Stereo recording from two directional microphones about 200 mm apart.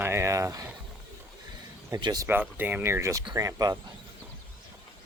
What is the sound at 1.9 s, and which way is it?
Speech, 20° right (ahead or behind).